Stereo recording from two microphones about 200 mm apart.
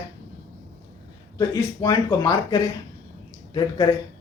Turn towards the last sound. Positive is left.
turn(degrees=20)  # may be behind; listen again after turning